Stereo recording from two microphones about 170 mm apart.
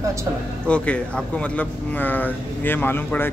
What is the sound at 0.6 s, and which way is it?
Speech, 5° left (ahead or behind).